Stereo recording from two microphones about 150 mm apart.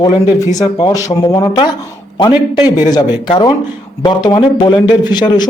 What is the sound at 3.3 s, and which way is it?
Speech, 30° left (ahead or behind).